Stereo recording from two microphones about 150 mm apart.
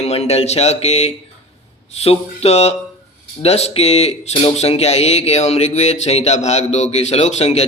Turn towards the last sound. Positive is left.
turn(degrees=45)  # may be behind; listen again after turning